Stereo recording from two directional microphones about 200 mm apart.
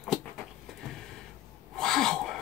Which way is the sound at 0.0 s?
Centre (ahead or behind).